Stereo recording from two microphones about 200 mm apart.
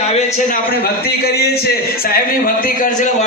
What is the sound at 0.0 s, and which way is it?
A man's voice, 30° left (ahead or behind).